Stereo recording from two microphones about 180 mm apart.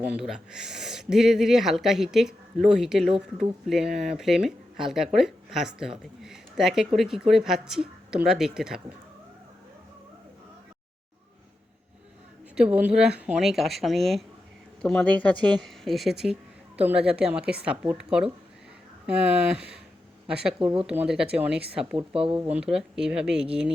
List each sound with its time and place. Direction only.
0.2 s speech: 5° right (ahead or behind)
12.5 s speech: 5° right (ahead or behind)
20.6 s speech: 30° right (ahead or behind)
20.8 s speech: 5° right (ahead or behind)
21.9 s speech: 30° right (ahead or behind)
22.3 s speech: 5° right (ahead or behind)